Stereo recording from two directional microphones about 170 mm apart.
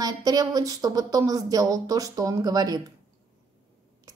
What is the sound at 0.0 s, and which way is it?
Speech, 20° right (ahead or behind).